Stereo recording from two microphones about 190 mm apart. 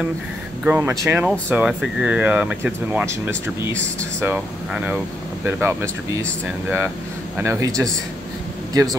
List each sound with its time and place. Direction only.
0.7 s speech: 10° right (ahead or behind)
7.3 s a man's voice: 15° right (ahead or behind)